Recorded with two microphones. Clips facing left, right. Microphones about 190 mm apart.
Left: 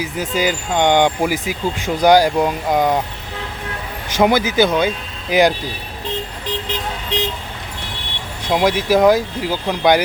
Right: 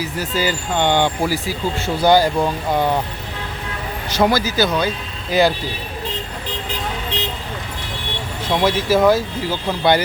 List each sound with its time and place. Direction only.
0.0 s speech: 15° left (ahead or behind)
4.1 s speech: 20° left (ahead or behind)
8.4 s speech: 15° left (ahead or behind)